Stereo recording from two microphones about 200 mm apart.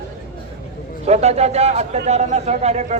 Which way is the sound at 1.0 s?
35° right (ahead or behind).